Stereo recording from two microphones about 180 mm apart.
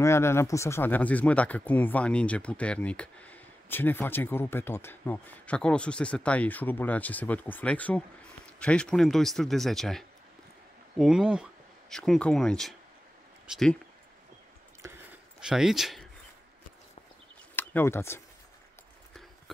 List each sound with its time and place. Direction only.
0.0 s a man's voice: 15° left (ahead or behind)
14.8 s a sound: 15° right (ahead or behind)
15.4 s a man's voice: centre (ahead or behind)
17.6 s speech: 10° left (ahead or behind)